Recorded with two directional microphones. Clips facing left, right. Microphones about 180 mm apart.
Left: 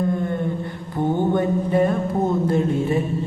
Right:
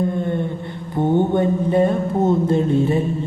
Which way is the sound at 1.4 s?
25° right (ahead or behind).